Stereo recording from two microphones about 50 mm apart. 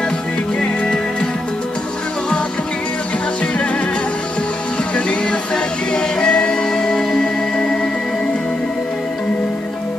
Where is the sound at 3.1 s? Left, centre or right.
Left.